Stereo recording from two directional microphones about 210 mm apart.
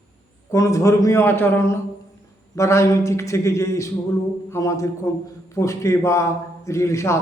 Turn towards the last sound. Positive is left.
turn(degrees=15)  # may be behind; listen again after turning